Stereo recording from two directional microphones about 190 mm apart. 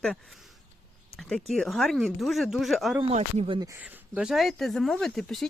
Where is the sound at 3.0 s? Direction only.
30° right (ahead or behind).